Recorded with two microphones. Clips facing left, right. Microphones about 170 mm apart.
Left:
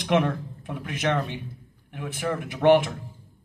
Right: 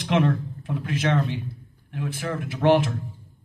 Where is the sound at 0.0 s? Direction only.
15° left (ahead or behind).